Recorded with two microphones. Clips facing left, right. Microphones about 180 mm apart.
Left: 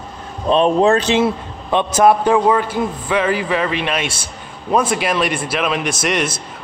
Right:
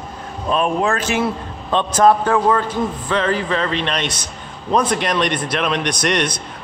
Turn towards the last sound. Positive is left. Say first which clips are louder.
# even
turn(degrees=5)  # may be behind; listen again after turning